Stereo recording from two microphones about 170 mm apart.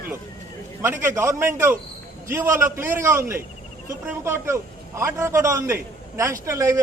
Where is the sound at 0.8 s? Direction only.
15° right (ahead or behind).